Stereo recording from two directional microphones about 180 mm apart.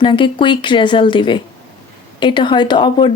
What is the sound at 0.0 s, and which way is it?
Speech, 25° left (ahead or behind).